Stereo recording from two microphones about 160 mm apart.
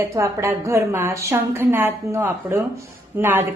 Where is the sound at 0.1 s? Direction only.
15° right (ahead or behind).